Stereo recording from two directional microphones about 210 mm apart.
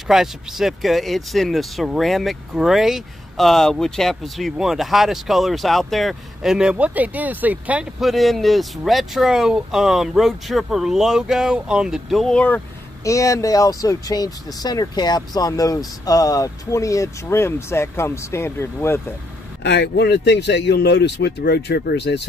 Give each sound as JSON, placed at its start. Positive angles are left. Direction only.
{"t": 0.1, "sound": "speech", "side_deg": 0}
{"t": 19.6, "sound": "speech", "side_deg": 55}